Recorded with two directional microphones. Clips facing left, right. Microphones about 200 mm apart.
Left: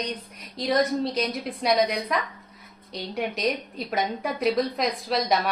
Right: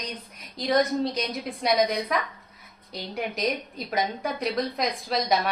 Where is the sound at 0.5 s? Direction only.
Centre (ahead or behind).